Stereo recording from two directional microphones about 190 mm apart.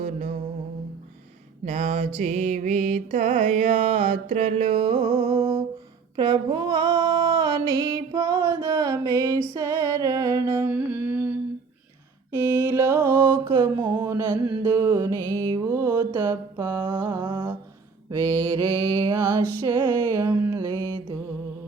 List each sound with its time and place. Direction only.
0.0 s music: 40° right (ahead or behind)
1.6 s music: 35° right (ahead or behind)
5.2 s a sound: 20° right (ahead or behind)
6.1 s speech: 20° right (ahead or behind)
7.8 s music: 20° right (ahead or behind)
9.6 s humming: 15° right (ahead or behind)
12.3 s mantra: 15° right (ahead or behind)
14.6 s music: 20° right (ahead or behind)
15.2 s mantra: 10° left (ahead or behind)
15.5 s mantra: 15° right (ahead or behind)
18.5 s mantra: 15° right (ahead or behind)
19.0 s music: 15° right (ahead or behind)
20.1 s mantra: 15° right (ahead or behind)